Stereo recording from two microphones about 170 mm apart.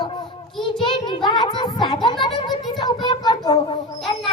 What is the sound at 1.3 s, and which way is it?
Speech, 25° left (ahead or behind).